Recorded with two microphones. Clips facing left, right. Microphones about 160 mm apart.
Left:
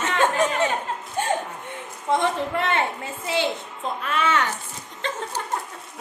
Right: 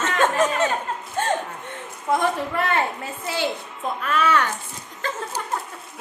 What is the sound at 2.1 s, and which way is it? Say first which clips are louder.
A woman's voice: even; 25° left (ahead or behind).